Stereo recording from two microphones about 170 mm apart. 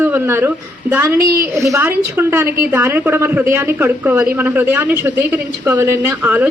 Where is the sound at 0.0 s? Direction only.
15° right (ahead or behind).